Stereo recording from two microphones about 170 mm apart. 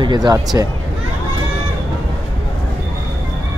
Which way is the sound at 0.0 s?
25° right (ahead or behind).